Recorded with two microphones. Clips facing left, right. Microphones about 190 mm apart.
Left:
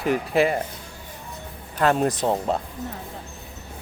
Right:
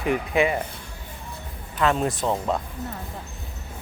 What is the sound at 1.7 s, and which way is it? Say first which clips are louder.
Speech: left 2 dB; 45° left (ahead or behind).